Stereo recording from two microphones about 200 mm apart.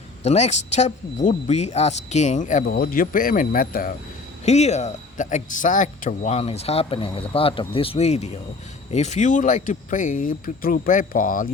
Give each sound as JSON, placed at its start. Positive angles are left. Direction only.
{"t": 0.3, "sound": "speech", "side_deg": 35}
{"t": 4.4, "sound": "speech", "side_deg": 35}